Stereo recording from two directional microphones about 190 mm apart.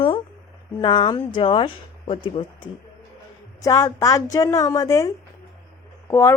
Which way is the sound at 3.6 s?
20° left (ahead or behind).